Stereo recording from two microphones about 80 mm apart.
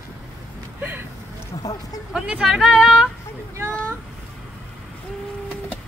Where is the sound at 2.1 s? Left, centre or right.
Centre.